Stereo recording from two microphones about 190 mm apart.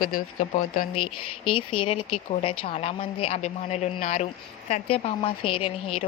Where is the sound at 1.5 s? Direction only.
30° left (ahead or behind).